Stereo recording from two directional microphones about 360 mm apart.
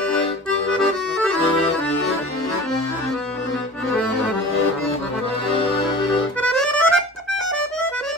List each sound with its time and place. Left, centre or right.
0.7 s accordion: centre
6.5 s music: centre